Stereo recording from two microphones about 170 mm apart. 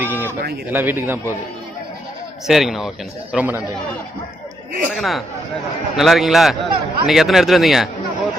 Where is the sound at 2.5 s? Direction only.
Centre (ahead or behind).